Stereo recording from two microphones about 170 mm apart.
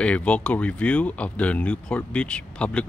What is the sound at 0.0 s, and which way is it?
Speech, 5° left (ahead or behind).